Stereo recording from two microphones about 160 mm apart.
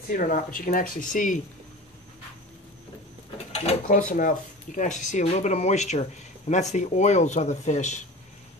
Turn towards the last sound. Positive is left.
turn(degrees=45)  # may be behind; listen again after turning